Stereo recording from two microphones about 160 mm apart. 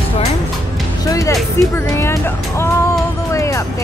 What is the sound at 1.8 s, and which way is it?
Speech, 15° left (ahead or behind).